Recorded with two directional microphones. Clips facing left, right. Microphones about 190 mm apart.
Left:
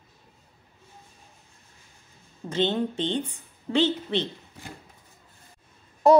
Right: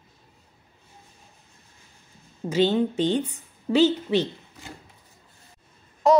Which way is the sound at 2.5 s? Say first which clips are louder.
Right 4 dB; 10° right (ahead or behind).